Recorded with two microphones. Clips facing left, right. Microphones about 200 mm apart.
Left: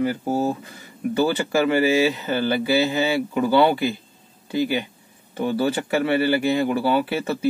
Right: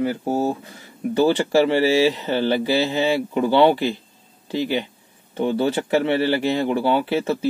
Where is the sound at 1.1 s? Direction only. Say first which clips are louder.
Right 4 dB; 30° right (ahead or behind).